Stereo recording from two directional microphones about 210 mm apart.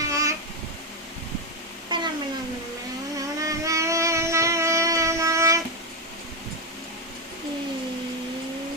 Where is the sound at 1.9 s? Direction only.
20° right (ahead or behind).